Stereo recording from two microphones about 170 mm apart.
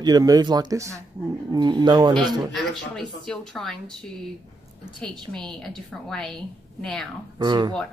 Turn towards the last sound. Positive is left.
turn(degrees=-25)  # may be behind; listen again after turning